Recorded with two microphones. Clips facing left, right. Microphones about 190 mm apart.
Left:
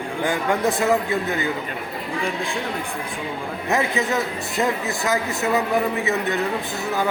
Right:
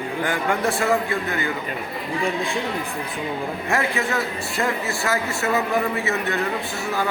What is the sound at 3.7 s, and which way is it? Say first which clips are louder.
A man's voice: left 3 dB; 20° left (ahead or behind).